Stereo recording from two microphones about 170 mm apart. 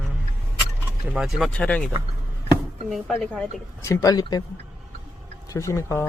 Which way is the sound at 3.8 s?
15° left (ahead or behind).